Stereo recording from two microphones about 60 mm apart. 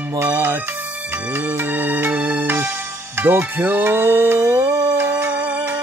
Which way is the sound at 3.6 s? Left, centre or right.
Right.